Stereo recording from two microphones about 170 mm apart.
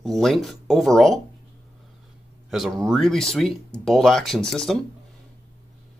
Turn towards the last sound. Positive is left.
turn(degrees=0)  # may be behind; listen again after turning